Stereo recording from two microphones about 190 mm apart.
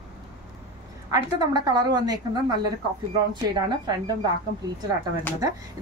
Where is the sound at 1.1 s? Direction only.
20° right (ahead or behind).